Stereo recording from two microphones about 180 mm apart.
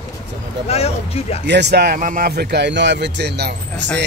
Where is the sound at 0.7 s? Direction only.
35° left (ahead or behind).